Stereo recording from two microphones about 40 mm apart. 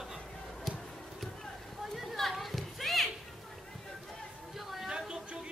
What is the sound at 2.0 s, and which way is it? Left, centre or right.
Children playing, centre.